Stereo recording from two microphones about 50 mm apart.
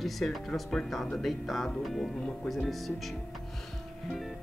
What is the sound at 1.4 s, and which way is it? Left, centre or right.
Speech, centre.